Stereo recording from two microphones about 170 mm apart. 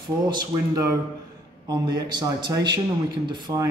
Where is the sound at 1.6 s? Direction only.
25° right (ahead or behind).